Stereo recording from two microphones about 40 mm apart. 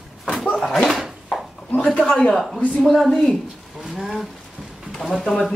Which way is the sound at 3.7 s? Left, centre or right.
Centre.